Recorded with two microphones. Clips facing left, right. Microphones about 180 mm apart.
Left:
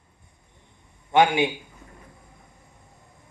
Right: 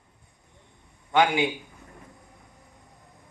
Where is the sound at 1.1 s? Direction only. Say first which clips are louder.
Left 3 dB; 25° left (ahead or behind).